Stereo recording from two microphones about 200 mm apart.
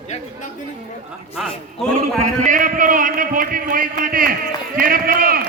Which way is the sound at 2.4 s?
40° right (ahead or behind).